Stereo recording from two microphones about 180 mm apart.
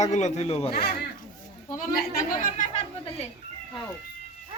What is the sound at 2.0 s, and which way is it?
Speech, 45° left (ahead or behind).